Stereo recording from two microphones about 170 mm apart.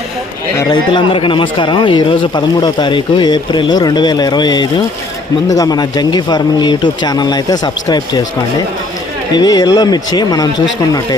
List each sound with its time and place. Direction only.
0.7 s speech: 30° left (ahead or behind)
9.3 s speech: 25° left (ahead or behind)